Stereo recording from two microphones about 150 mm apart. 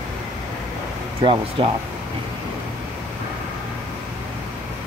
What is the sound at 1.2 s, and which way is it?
Speech, 35° right (ahead or behind).